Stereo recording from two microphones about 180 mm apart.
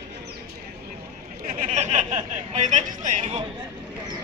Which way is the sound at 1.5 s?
45° right (ahead or behind).